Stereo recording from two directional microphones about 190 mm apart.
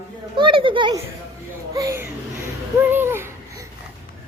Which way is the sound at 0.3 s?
25° right (ahead or behind).